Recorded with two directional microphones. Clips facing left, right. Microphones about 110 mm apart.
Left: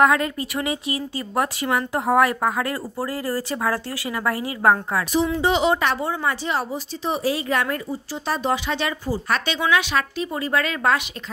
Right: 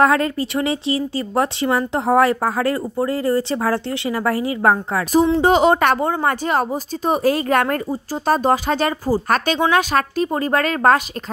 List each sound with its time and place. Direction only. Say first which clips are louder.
0.0 s speech: right 2 dB; 35° right (ahead or behind)
5.4 s a woman's voice: right 5 dB; 45° right (ahead or behind)